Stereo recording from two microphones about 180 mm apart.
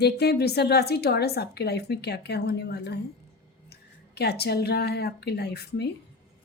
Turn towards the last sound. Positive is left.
turn(degrees=65)  # may be behind; listen again after turning